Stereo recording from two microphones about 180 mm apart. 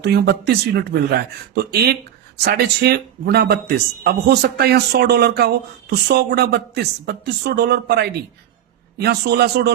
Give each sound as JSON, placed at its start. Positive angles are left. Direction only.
{"t": 0.0, "sound": "a man's voice", "side_deg": -65}